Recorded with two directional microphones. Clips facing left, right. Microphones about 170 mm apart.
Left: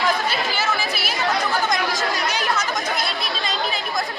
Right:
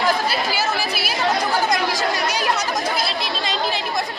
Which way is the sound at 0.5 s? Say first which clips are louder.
Right 1 dB; 40° right (ahead or behind).